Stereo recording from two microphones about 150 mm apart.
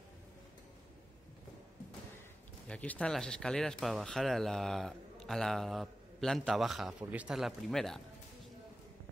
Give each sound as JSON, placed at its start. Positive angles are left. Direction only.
{"t": 2.7, "sound": "speech", "side_deg": 10}